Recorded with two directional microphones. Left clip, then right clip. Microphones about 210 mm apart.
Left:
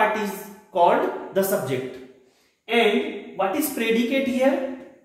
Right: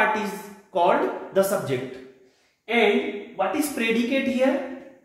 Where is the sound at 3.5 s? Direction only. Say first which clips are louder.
Left 1 dB; 20° right (ahead or behind).